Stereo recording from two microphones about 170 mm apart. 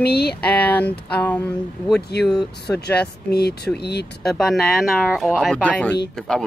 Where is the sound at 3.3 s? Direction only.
70° left (ahead or behind).